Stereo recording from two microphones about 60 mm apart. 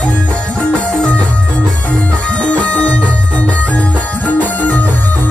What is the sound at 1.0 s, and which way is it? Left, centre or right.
Music, left.